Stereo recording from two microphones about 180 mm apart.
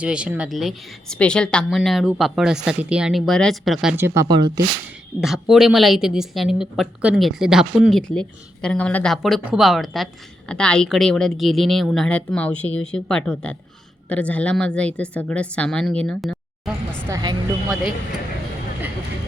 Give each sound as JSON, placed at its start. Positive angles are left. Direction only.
{"t": 0.0, "sound": "a woman's voice", "side_deg": -5}
{"t": 5.2, "sound": "a woman's voice", "side_deg": 0}
{"t": 17.1, "sound": "speech", "side_deg": -25}